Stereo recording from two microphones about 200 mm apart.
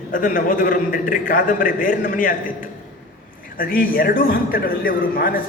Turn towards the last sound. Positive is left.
turn(degrees=45)  # may be behind; listen again after turning